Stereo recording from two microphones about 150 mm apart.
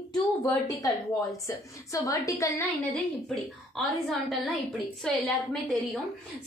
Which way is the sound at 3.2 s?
Centre (ahead or behind).